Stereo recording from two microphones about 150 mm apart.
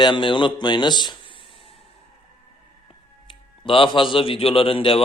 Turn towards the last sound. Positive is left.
turn(degrees=35)  # may be behind; listen again after turning